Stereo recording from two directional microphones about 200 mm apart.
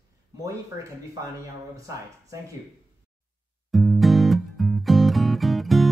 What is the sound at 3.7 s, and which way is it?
Music, centre (ahead or behind).